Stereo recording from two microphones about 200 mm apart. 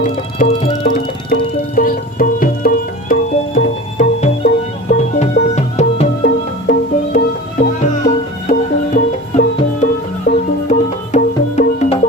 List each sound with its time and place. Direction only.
0.0 s music: 35° left (ahead or behind)
8.4 s music: 40° left (ahead or behind)